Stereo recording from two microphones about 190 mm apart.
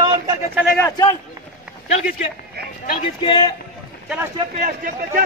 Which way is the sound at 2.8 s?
40° left (ahead or behind).